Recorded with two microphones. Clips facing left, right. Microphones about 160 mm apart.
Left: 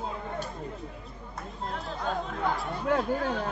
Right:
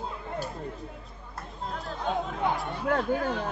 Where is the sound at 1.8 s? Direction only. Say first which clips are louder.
Right 3 dB; centre (ahead or behind).